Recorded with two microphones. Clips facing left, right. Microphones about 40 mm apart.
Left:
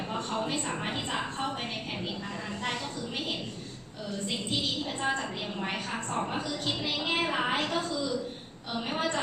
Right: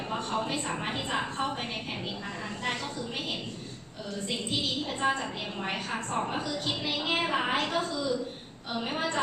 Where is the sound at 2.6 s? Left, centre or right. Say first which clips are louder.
Right 2 dB; centre.